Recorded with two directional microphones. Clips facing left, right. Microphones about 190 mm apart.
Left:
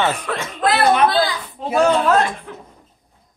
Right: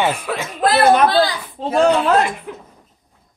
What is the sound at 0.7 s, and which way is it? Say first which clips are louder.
Speech: right 3 dB; 40° right (ahead or behind).